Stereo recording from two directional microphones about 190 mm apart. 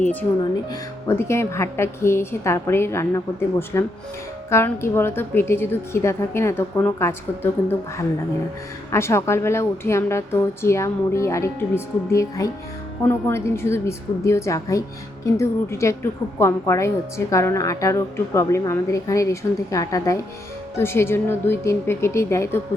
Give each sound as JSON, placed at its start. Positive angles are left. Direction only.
{"t": 0.7, "sound": "a woman's voice", "side_deg": 15}